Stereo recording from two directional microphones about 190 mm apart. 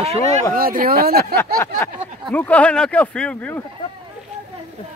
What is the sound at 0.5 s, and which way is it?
Speech, 50° right (ahead or behind).